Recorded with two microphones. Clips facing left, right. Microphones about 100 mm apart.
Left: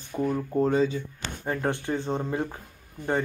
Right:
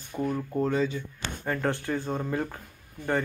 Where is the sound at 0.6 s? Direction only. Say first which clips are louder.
Left 4 dB; 30° left (ahead or behind).